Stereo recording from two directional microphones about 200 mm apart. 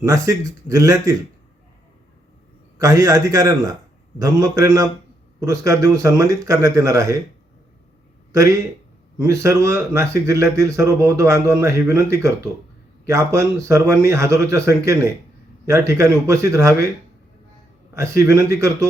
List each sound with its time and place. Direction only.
0.0 s speech: 15° right (ahead or behind)
2.7 s speech: 15° right (ahead or behind)
8.3 s speech: 15° right (ahead or behind)
17.9 s speech: 15° right (ahead or behind)